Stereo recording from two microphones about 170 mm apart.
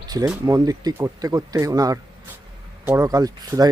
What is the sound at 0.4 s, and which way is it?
Speech, 20° right (ahead or behind).